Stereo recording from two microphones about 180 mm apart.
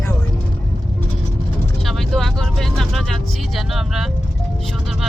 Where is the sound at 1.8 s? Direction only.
Centre (ahead or behind).